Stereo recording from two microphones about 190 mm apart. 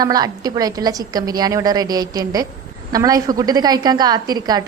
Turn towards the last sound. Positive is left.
turn(degrees=-20)  # may be behind; listen again after turning